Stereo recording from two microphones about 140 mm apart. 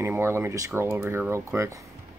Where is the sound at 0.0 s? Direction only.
20° right (ahead or behind).